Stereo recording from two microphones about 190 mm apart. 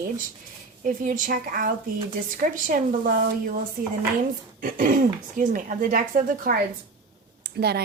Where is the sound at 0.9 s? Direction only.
45° right (ahead or behind).